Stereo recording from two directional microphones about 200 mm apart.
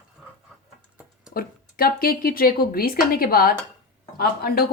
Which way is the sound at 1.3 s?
50° left (ahead or behind).